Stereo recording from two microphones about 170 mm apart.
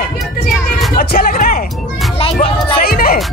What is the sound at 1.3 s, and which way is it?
Music, 50° left (ahead or behind).